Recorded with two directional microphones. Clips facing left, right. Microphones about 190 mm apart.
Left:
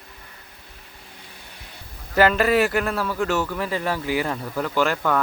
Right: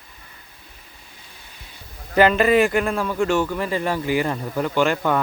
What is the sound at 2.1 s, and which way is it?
Speech, centre (ahead or behind).